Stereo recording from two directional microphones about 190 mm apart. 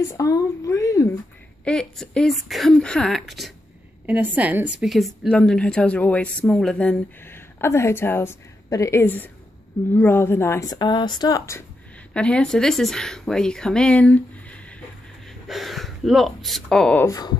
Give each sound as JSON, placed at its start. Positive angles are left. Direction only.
{"t": 0.1, "sound": "a woman's voice", "side_deg": 15}
{"t": 1.6, "sound": "a woman's voice", "side_deg": 5}
{"t": 12.1, "sound": "speech", "side_deg": 5}